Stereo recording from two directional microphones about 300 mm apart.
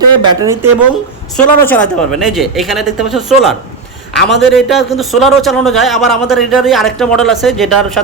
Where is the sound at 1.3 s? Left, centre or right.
Centre.